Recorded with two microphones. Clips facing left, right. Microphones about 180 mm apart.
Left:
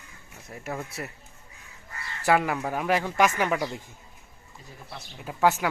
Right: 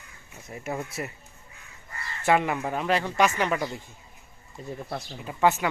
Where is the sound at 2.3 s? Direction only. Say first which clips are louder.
Even; centre (ahead or behind).